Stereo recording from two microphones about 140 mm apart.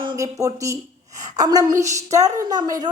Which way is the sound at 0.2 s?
25° right (ahead or behind).